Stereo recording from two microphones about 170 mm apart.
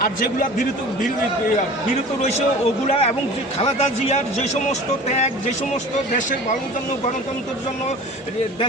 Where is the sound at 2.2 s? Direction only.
40° left (ahead or behind).